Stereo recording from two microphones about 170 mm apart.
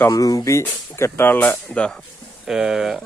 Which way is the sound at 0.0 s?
20° left (ahead or behind).